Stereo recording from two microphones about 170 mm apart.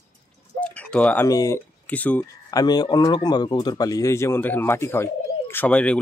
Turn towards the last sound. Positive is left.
turn(degrees=10)  # may be behind; listen again after turning